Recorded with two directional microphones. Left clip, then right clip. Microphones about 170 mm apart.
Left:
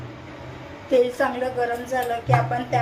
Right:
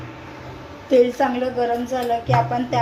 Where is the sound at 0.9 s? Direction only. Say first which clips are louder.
Right 3 dB; 10° right (ahead or behind).